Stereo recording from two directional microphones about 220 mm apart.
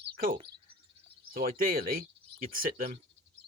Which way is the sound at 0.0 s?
40° right (ahead or behind).